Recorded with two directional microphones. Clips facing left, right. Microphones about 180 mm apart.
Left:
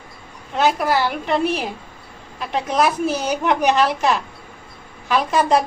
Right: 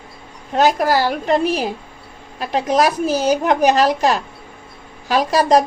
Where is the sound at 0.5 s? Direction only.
40° right (ahead or behind).